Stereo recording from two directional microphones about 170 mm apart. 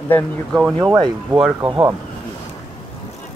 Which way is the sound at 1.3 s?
10° right (ahead or behind).